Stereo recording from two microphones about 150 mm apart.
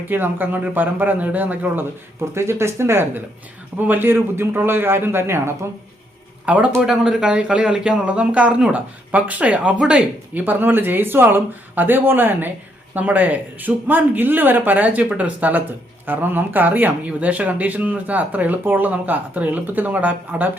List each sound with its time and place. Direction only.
0.1 s a man's voice: 15° right (ahead or behind)